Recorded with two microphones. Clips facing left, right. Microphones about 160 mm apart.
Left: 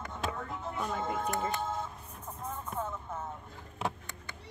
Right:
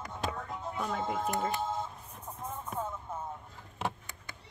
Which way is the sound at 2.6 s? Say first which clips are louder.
Even; 10° right (ahead or behind).